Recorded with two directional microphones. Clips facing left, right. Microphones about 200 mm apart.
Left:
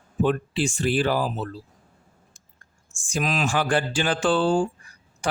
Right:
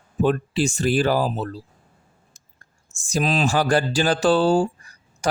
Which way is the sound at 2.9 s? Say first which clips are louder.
Right 4 dB; 40° right (ahead or behind).